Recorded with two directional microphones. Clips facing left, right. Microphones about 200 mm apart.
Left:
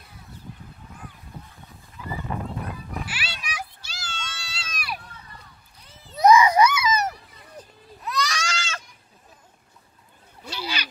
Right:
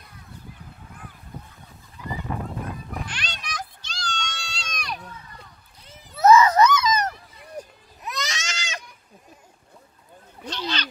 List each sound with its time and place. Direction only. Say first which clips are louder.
3.1 s children playing: even; 5° left (ahead or behind)
6.1 s screaming: right 1 dB; 15° left (ahead or behind)
7.5 s sheep: right 6 dB; 20° right (ahead or behind)
10.4 s a sound: right 3 dB; 10° left (ahead or behind)